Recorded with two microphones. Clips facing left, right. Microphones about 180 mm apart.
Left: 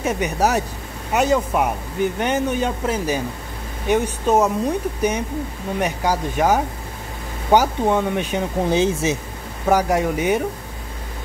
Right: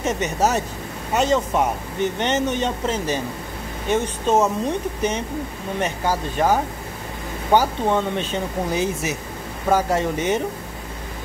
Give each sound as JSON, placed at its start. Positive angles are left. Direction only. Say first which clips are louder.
{"t": 0.0, "sound": "speech", "louder": "left 1 dB", "side_deg": 10}
{"t": 8.6, "sound": "speech", "louder": "left 5 dB", "side_deg": 25}
{"t": 9.7, "sound": "speech", "louder": "left 2 dB", "side_deg": 15}